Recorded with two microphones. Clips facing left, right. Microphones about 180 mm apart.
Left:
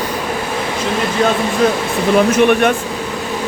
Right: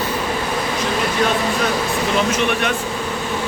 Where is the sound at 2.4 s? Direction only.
55° left (ahead or behind).